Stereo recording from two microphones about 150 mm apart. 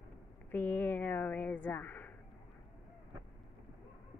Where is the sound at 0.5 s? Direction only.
10° left (ahead or behind).